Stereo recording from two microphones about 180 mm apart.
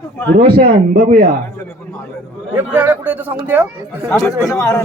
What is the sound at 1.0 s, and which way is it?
Speech, 45° right (ahead or behind).